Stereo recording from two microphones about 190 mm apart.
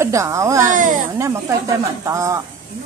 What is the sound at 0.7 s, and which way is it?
Speech, 45° right (ahead or behind).